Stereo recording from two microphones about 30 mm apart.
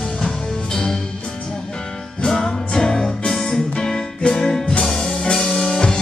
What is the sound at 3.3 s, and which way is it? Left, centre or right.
Keyboard, left.